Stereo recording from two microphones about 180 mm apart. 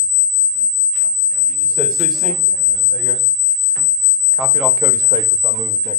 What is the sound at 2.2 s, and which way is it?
Speech, centre (ahead or behind).